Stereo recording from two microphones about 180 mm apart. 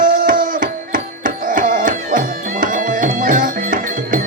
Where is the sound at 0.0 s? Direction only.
50° right (ahead or behind).